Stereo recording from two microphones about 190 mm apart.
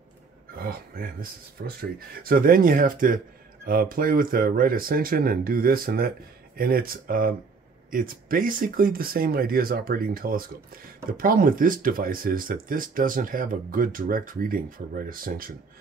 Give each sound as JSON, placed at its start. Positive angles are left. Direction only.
{"t": 0.6, "sound": "speech", "side_deg": -50}